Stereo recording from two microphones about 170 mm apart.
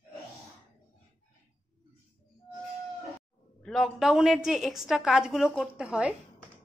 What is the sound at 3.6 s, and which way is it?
A woman's voice, centre (ahead or behind).